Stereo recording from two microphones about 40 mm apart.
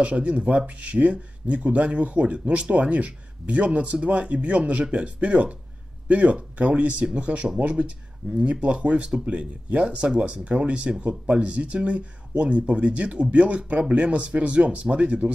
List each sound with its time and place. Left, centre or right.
0.1 s speech: right